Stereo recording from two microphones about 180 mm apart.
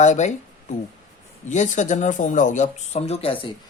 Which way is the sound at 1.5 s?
40° left (ahead or behind).